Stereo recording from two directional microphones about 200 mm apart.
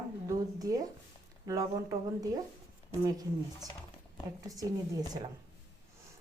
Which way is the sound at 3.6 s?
20° right (ahead or behind).